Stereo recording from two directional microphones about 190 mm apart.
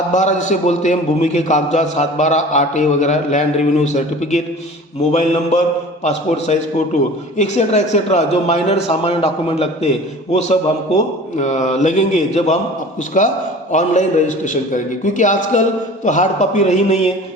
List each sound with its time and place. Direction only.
0.1 s a man's voice: 40° left (ahead or behind)